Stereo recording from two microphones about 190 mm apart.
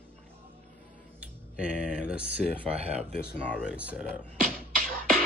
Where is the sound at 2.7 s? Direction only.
35° right (ahead or behind).